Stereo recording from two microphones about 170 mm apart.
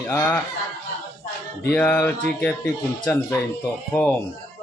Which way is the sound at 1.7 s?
10° left (ahead or behind).